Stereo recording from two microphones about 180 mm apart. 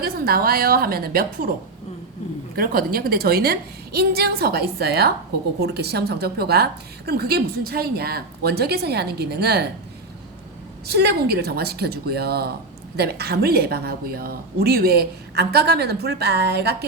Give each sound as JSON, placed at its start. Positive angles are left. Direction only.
{"t": 0.0, "sound": "a woman's voice", "side_deg": -55}
{"t": 2.6, "sound": "a woman's voice", "side_deg": -55}
{"t": 10.8, "sound": "a woman's voice", "side_deg": -60}